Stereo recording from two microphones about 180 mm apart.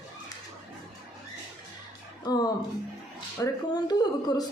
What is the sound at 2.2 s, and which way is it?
A woman's voice, 20° left (ahead or behind).